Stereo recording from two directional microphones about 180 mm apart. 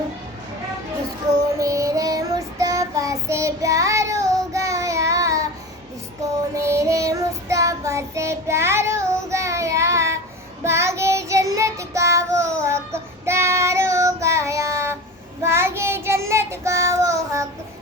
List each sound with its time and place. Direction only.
1.5 s child singing: 20° right (ahead or behind)
6.6 s child singing: 15° right (ahead or behind)